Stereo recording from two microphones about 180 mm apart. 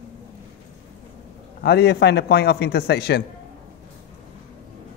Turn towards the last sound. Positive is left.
turn(degrees=65)  # may be behind; listen again after turning